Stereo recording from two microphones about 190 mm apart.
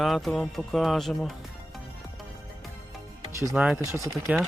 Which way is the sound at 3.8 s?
15° right (ahead or behind).